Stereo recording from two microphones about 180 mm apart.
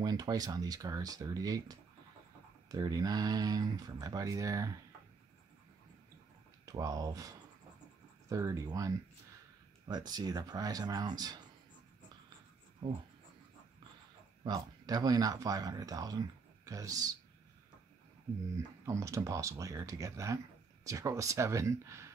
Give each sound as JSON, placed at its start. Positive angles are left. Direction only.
{"t": 0.0, "sound": "speech", "side_deg": -20}
{"t": 6.6, "sound": "speech", "side_deg": -20}
{"t": 14.4, "sound": "speech", "side_deg": -20}
{"t": 18.9, "sound": "speech", "side_deg": -15}